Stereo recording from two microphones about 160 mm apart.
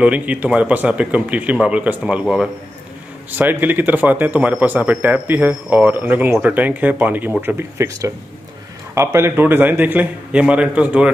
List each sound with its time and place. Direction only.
0.0 s speech: 10° right (ahead or behind)